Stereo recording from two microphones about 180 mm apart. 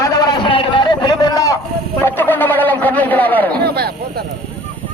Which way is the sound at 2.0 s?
10° left (ahead or behind).